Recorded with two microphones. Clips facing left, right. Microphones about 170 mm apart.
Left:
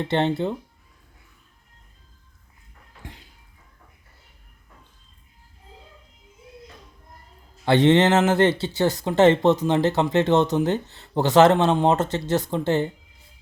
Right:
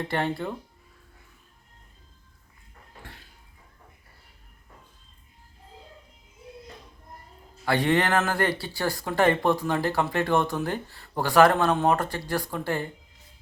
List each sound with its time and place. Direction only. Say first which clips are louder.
0.0 s speech: left 6 dB; 25° left (ahead or behind)
3.0 s a sound: left 4 dB; 20° left (ahead or behind)
7.6 s speech: left 7 dB; 25° left (ahead or behind)